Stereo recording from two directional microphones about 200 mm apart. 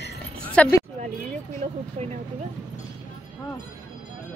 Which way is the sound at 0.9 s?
35° right (ahead or behind).